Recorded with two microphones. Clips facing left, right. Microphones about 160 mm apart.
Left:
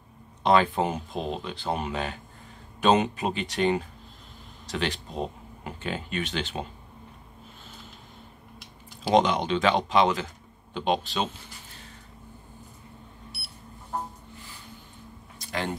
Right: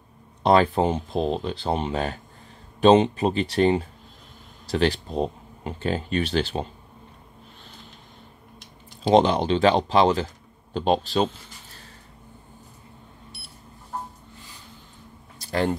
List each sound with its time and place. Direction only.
0.4 s speech: 35° right (ahead or behind)
9.0 s speech: 30° right (ahead or behind)
15.4 s a sound: 35° right (ahead or behind)